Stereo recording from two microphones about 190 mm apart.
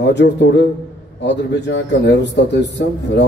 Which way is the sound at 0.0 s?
65° left (ahead or behind).